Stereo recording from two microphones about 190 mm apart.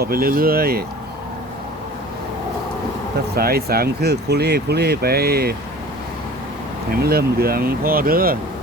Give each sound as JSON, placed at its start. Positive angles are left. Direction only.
{"t": 0.0, "sound": "speech", "side_deg": -50}
{"t": 3.3, "sound": "speech", "side_deg": -55}
{"t": 7.0, "sound": "speech", "side_deg": -55}